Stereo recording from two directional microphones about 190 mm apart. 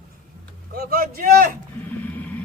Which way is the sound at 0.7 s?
50° right (ahead or behind).